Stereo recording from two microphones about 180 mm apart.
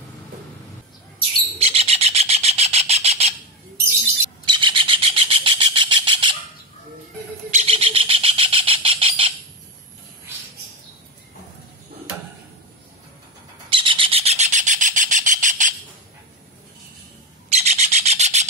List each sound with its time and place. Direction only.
1.6 s bird: 35° right (ahead or behind)
4.5 s bird: 25° right (ahead or behind)
7.5 s bird: 35° right (ahead or behind)
13.7 s bird: 30° right (ahead or behind); by 15.7 s 45° right (ahead or behind)
17.5 s bird: 40° right (ahead or behind)